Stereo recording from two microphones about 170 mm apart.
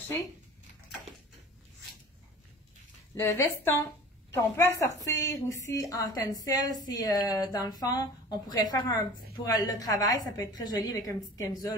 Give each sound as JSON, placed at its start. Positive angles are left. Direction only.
{"t": 3.2, "sound": "a woman's voice", "side_deg": 15}